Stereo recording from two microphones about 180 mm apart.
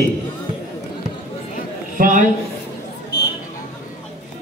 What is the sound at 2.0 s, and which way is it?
Speech, 45° right (ahead or behind).